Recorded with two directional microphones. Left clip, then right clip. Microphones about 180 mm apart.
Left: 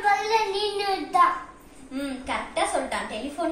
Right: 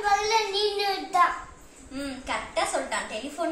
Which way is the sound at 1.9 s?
Centre (ahead or behind).